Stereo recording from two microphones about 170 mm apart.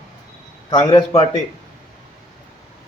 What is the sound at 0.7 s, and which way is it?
Speech, 25° left (ahead or behind).